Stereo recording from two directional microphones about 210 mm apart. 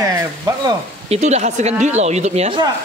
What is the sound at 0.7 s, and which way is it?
Speech, 30° right (ahead or behind).